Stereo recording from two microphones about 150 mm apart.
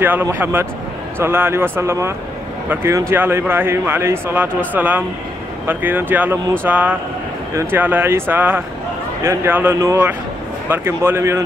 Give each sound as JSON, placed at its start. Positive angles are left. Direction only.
{"t": 0.0, "sound": "a man's voice", "side_deg": -15}